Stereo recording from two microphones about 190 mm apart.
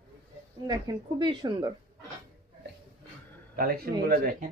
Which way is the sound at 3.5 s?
55° right (ahead or behind).